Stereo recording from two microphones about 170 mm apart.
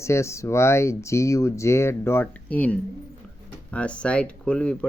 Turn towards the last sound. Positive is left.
turn(degrees=10)  # may be behind; listen again after turning